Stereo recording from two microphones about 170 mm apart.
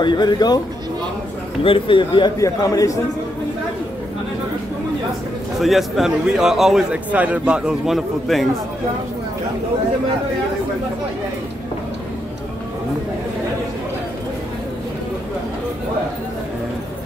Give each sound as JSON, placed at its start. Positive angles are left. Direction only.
{"t": 0.0, "sound": "a man's voice", "side_deg": 25}
{"t": 1.6, "sound": "a man's voice", "side_deg": 30}
{"t": 5.6, "sound": "a man's voice", "side_deg": 0}